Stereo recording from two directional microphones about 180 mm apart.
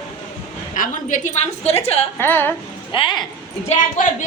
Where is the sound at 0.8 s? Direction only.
45° left (ahead or behind).